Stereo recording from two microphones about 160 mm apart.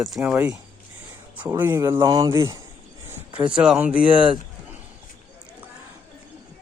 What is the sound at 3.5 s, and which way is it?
Speech, 5° right (ahead or behind).